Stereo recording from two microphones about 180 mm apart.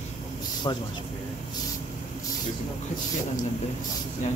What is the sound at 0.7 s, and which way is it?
Speech, 25° left (ahead or behind).